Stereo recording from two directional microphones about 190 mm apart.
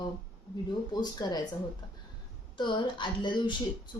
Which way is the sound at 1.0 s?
20° left (ahead or behind).